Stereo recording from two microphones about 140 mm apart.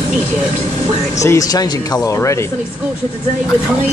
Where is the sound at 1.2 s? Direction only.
25° left (ahead or behind).